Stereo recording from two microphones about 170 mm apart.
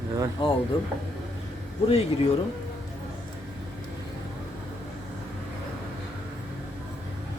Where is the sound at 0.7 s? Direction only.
30° left (ahead or behind).